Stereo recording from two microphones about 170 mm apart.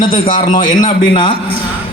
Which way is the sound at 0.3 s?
55° left (ahead or behind).